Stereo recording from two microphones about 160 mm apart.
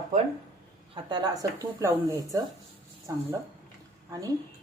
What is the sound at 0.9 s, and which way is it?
A woman's voice, 25° right (ahead or behind).